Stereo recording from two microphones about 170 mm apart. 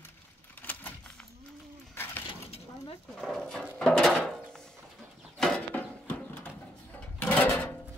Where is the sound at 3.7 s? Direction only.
5° left (ahead or behind).